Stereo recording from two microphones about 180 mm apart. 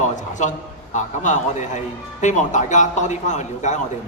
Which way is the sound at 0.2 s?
45° left (ahead or behind).